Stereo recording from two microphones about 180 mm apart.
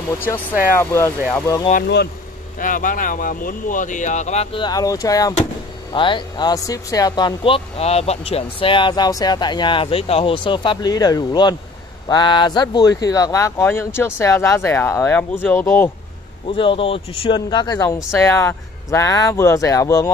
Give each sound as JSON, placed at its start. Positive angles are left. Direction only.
{"t": 0.2, "sound": "speech", "side_deg": 10}
{"t": 2.6, "sound": "speech", "side_deg": 50}
{"t": 16.4, "sound": "speech", "side_deg": 30}